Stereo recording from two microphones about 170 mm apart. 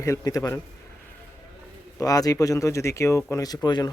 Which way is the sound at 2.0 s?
20° left (ahead or behind).